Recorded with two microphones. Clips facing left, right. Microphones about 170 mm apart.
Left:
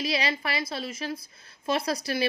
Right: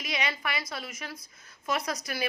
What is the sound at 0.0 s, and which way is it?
A woman's voice, 30° left (ahead or behind).